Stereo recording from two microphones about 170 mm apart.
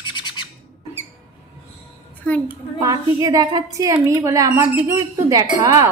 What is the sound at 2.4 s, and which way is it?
A woman's voice, 20° right (ahead or behind).